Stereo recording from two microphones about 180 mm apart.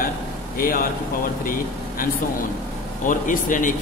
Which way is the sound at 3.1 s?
45° left (ahead or behind).